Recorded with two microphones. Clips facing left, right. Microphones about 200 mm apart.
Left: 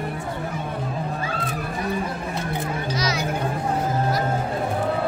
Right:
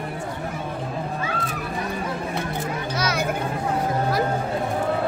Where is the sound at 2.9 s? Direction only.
55° right (ahead or behind).